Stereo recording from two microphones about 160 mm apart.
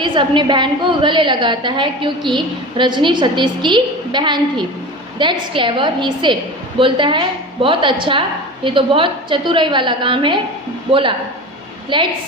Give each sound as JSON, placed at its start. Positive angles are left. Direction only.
{"t": 0.0, "sound": "a woman's voice", "side_deg": -30}